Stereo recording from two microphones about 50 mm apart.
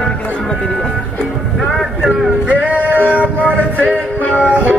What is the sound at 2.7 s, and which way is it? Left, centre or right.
Music, right.